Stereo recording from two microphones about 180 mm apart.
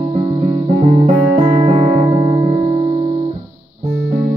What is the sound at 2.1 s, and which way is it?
Music, 20° right (ahead or behind).